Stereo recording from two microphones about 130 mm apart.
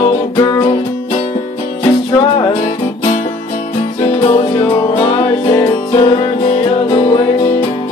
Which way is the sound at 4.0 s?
45° left (ahead or behind).